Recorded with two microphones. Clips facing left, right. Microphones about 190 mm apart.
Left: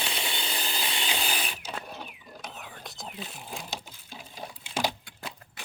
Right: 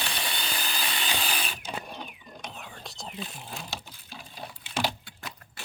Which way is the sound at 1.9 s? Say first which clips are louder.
Right 1 dB; 5° left (ahead or behind).